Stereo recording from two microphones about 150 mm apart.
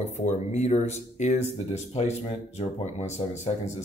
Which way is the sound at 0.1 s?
50° left (ahead or behind).